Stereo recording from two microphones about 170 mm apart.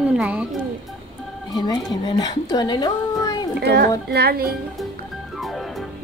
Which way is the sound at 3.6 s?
75° right (ahead or behind).